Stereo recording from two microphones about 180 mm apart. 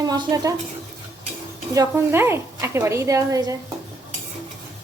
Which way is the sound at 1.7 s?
15° right (ahead or behind).